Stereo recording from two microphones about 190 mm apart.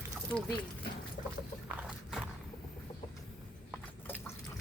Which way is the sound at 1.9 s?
Centre (ahead or behind).